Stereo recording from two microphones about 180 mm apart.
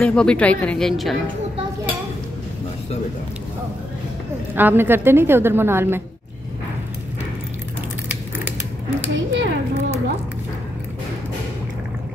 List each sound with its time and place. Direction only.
0.0 s speech: 5° left (ahead or behind)
4.6 s a woman's voice: 10° right (ahead or behind)
9.1 s a child's voice: 85° right